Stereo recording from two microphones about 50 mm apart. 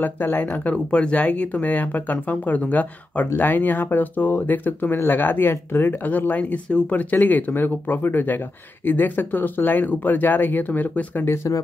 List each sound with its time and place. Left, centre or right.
0.0 s speech: left
11.2 s speech: left